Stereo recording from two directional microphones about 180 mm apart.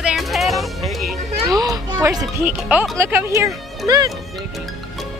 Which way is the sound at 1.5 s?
20° right (ahead or behind).